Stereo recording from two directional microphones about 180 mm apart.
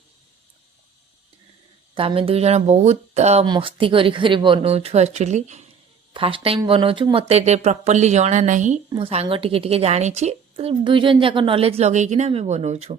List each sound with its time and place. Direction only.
2.0 s a woman's voice: 30° right (ahead or behind)
3.4 s speech: 25° right (ahead or behind)
6.1 s a woman's voice: 30° right (ahead or behind)
8.9 s a woman's voice: 30° right (ahead or behind)